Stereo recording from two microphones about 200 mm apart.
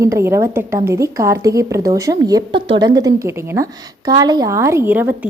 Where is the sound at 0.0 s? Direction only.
15° right (ahead or behind).